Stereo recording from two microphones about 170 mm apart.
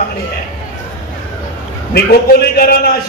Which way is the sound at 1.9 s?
65° left (ahead or behind).